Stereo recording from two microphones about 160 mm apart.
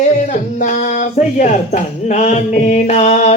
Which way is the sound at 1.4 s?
45° left (ahead or behind).